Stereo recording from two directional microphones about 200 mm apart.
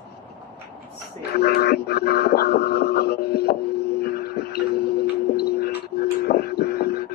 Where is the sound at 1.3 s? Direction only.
50° left (ahead or behind).